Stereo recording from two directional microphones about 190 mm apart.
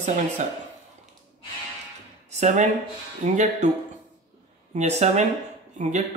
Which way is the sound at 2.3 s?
40° right (ahead or behind).